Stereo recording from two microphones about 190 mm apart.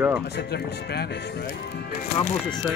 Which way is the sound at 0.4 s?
60° left (ahead or behind).